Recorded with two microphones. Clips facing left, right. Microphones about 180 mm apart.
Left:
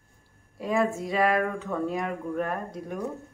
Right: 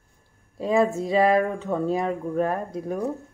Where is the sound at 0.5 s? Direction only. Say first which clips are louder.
Right 5 dB; 25° right (ahead or behind).